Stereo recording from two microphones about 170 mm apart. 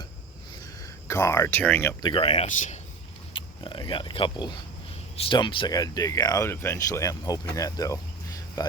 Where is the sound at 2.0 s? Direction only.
30° left (ahead or behind).